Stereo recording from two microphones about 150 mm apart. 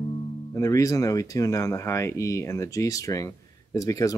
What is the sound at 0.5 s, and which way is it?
Speech, 20° left (ahead or behind).